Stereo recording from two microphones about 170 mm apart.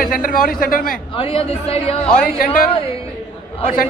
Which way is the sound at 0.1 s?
55° left (ahead or behind).